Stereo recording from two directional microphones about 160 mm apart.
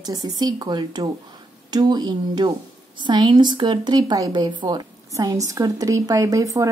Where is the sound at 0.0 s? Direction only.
25° right (ahead or behind).